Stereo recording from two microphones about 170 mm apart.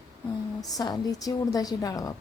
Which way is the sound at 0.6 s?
20° left (ahead or behind).